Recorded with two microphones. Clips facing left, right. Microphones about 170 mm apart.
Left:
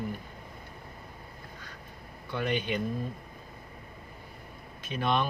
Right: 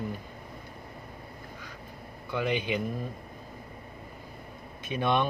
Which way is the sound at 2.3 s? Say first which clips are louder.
Right 1 dB; 10° right (ahead or behind).